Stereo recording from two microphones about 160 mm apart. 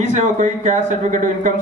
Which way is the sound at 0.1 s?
55° right (ahead or behind).